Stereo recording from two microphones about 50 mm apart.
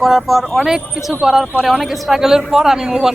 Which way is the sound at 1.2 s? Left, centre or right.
Centre.